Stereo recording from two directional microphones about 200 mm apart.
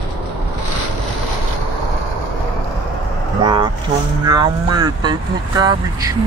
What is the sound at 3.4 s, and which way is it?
Vehicle, 20° right (ahead or behind).